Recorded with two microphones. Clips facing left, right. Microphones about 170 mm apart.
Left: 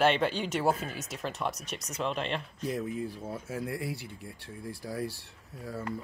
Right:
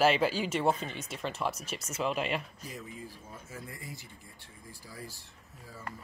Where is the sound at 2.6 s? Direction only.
85° left.